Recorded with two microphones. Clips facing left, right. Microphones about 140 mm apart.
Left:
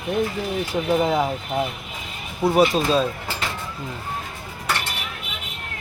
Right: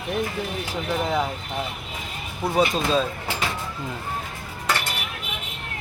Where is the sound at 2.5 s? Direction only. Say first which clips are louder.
Left 2 dB; 5° left (ahead or behind).